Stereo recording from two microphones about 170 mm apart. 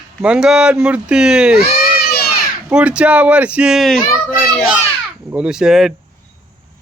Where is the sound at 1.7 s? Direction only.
60° left (ahead or behind).